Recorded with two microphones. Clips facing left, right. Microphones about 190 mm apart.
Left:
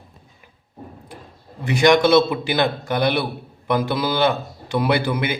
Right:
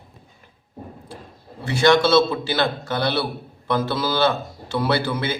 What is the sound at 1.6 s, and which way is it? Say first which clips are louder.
A man's voice: left 2 dB; 15° left (ahead or behind).